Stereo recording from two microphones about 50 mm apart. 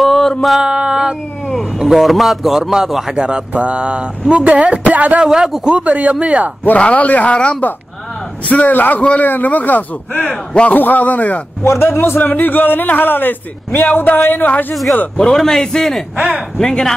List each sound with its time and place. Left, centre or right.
0.0 s a sound: centre
0.6 s a sound: centre
1.5 s cat: centre
1.8 s a man's voice: centre
3.2 s speech: centre
5.2 s speech: centre
5.7 s speech: right
6.1 s speech: centre
6.8 s speech: left
11.6 s a man's voice: left
15.3 s a man's voice: centre
16.2 s speech: right
16.5 s a man's voice: centre